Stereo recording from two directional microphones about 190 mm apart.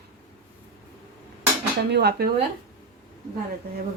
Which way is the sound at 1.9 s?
60° right (ahead or behind).